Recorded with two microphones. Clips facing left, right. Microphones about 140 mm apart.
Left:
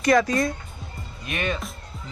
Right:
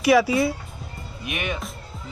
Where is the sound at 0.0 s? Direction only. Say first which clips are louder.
Right 2 dB; 5° right (ahead or behind).